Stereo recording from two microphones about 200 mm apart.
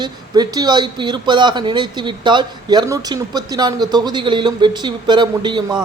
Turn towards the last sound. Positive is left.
turn(degrees=-20)  # may be behind; listen again after turning